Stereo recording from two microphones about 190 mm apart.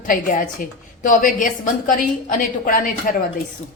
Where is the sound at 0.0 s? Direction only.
45° left (ahead or behind).